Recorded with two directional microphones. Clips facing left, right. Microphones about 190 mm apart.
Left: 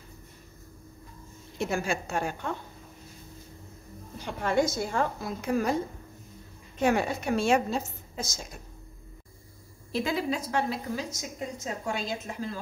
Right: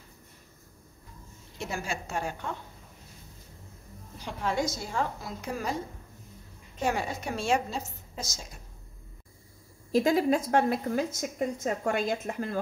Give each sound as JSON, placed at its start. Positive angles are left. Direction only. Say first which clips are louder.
{"t": 1.6, "sound": "a woman's voice", "louder": "left 5 dB", "side_deg": 55}
{"t": 4.4, "sound": "a woman's voice", "louder": "left 4 dB", "side_deg": 55}
{"t": 6.8, "sound": "a woman's voice", "louder": "left 4 dB", "side_deg": 60}
{"t": 9.9, "sound": "a woman's voice", "louder": "right 5 dB", "side_deg": -45}